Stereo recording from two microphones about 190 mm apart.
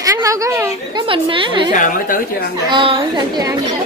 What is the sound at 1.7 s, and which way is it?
Speech, 45° left (ahead or behind).